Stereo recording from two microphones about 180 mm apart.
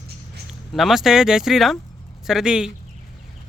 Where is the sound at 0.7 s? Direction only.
Centre (ahead or behind).